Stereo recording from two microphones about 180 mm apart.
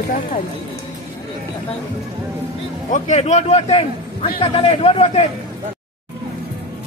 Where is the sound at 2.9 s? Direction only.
40° left (ahead or behind).